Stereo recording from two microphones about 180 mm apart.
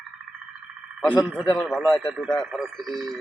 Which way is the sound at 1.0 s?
25° left (ahead or behind).